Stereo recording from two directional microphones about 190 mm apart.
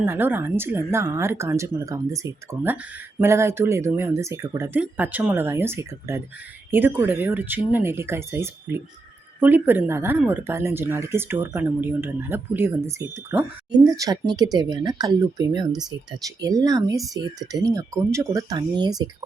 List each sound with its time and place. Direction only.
0.0 s a woman's voice: 10° right (ahead or behind)